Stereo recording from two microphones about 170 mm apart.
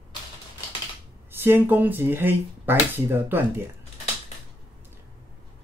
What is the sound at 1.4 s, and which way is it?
Speech, 10° right (ahead or behind).